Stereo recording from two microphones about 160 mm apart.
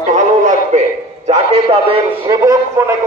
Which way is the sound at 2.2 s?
20° right (ahead or behind).